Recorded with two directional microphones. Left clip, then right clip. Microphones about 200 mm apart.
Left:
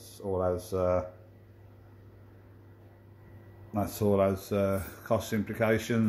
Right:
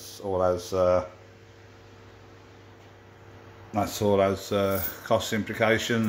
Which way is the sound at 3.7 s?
Centre (ahead or behind).